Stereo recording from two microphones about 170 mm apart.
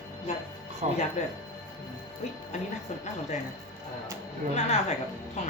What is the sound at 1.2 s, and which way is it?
Speech, 45° left (ahead or behind).